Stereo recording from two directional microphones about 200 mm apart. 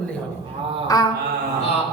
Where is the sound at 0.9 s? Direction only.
20° left (ahead or behind).